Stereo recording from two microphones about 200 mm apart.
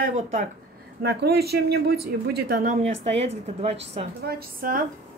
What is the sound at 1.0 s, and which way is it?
A woman's voice, 55° right (ahead or behind).